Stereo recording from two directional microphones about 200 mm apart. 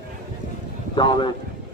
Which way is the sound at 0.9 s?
20° left (ahead or behind).